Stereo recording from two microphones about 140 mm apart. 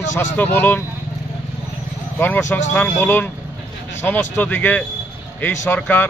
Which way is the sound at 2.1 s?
15° left (ahead or behind).